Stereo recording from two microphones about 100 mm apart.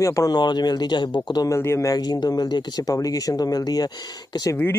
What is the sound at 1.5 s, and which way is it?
Speech, 25° left (ahead or behind).